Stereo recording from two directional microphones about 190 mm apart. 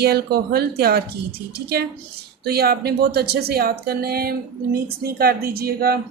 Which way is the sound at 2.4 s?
55° right (ahead or behind).